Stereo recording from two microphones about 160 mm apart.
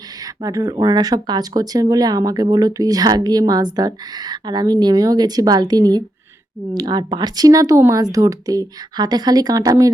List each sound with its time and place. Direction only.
0.2 s speech: 25° right (ahead or behind)